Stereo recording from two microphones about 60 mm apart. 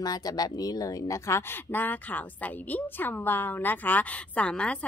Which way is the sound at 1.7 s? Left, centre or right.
Left.